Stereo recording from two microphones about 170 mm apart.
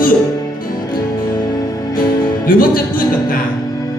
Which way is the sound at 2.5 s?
55° left (ahead or behind).